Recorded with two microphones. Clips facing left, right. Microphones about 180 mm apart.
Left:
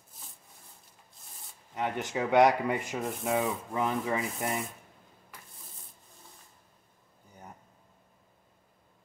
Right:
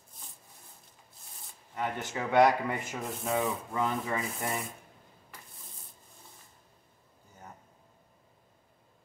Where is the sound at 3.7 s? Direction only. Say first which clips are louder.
Left 2 dB; 20° left (ahead or behind).